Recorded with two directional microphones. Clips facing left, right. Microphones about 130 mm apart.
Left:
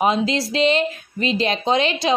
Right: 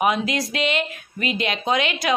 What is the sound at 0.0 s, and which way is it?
A woman's voice, 30° left (ahead or behind).